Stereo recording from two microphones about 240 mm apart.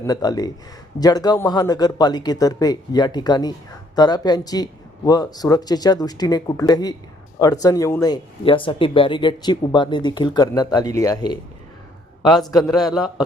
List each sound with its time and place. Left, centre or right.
0.0 s speech: centre